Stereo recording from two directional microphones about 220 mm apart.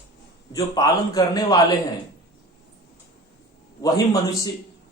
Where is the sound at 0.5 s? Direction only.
15° left (ahead or behind).